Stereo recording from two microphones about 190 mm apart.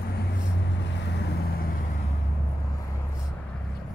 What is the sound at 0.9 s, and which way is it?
Vehicle, 65° left (ahead or behind).